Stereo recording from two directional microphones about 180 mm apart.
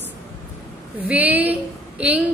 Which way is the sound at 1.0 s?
10° right (ahead or behind).